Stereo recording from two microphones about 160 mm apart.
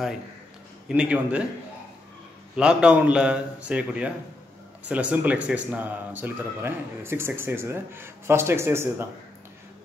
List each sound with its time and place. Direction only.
0.8 s speech: 5° right (ahead or behind)
2.5 s speech: 5° right (ahead or behind)